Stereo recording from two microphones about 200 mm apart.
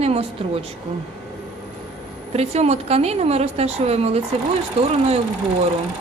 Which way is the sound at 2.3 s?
30° right (ahead or behind).